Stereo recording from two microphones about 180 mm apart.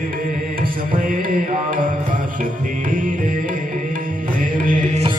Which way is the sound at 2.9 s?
50° right (ahead or behind).